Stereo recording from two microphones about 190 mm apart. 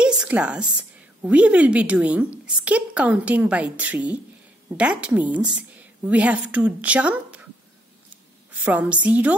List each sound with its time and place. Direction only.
0.0 s a woman's voice: 5° right (ahead or behind)
8.5 s a woman's voice: 10° right (ahead or behind)